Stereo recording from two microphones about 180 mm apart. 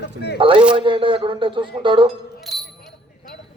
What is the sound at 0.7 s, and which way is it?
A man's voice, 30° right (ahead or behind).